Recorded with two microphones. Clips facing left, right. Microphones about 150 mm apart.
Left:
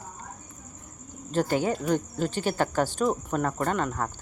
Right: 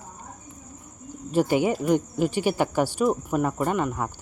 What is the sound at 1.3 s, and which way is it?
Speech, 10° right (ahead or behind).